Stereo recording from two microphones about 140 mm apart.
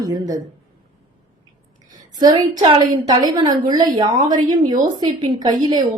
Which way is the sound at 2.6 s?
30° right (ahead or behind).